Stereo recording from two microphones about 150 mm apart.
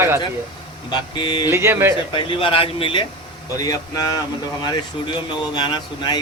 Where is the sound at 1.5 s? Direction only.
15° right (ahead or behind).